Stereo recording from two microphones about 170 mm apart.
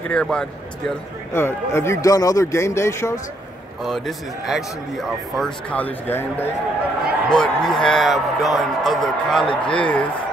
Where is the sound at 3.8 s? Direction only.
Centre (ahead or behind).